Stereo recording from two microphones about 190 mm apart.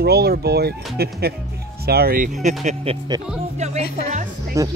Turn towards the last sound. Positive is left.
turn(degrees=-40)  # may be behind; listen again after turning